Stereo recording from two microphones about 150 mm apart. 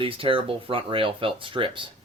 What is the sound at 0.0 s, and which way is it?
Speech, 35° right (ahead or behind).